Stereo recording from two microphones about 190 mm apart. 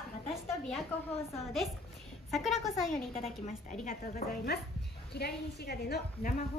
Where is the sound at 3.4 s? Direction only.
45° left (ahead or behind).